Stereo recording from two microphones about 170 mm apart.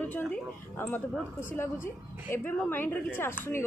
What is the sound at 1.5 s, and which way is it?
A woman's voice, 15° left (ahead or behind).